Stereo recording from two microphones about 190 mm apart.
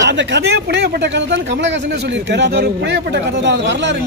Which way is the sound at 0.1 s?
65° right (ahead or behind).